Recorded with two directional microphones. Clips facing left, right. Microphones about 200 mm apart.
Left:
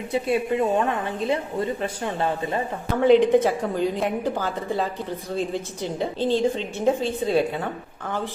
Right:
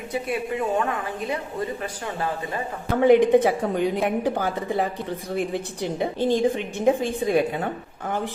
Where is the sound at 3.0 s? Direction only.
15° right (ahead or behind).